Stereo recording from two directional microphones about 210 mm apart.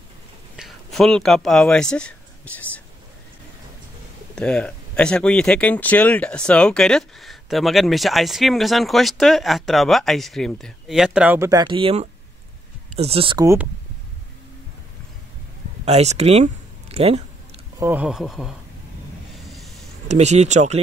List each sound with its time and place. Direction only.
0.6 s speech: centre (ahead or behind)
4.4 s speech: 5° left (ahead or behind); by 13.5 s 25° right (ahead or behind)
15.8 s speech: 30° right (ahead or behind)
17.7 s speech: 10° right (ahead or behind)
19.5 s a sound: centre (ahead or behind)
20.1 s speech: 30° right (ahead or behind)